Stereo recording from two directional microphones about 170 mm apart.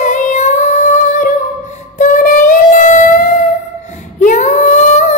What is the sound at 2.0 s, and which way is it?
Music, 50° left (ahead or behind).